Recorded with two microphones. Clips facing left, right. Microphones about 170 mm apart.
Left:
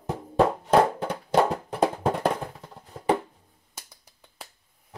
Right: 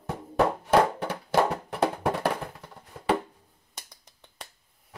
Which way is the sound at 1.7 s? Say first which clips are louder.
Left 2 dB; 25° left (ahead or behind).